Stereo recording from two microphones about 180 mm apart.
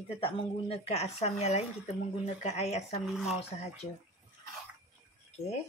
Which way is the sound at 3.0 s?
Centre (ahead or behind).